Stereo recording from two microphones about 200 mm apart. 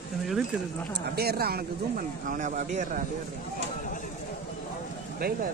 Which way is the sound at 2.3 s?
40° right (ahead or behind).